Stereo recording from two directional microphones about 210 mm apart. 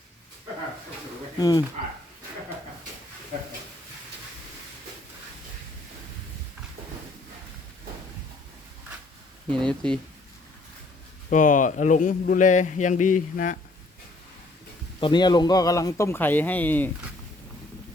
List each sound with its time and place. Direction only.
1.4 s speech: 20° left (ahead or behind)
9.5 s speech: 5° left (ahead or behind)
11.3 s a man's voice: 35° left (ahead or behind)
15.0 s a man's voice: 20° left (ahead or behind)